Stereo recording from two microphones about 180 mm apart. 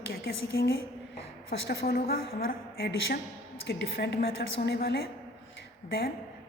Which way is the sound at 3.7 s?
70° left (ahead or behind).